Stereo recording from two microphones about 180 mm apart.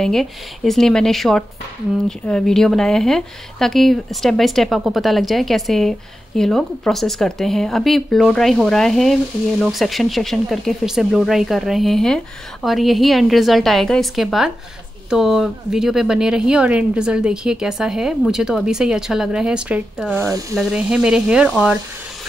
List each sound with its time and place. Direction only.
0.0 s speech: centre (ahead or behind)
20.2 s speech: 20° right (ahead or behind)
20.5 s speech: 5° right (ahead or behind)